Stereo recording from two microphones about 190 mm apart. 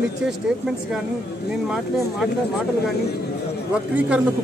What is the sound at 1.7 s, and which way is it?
Speech, centre (ahead or behind).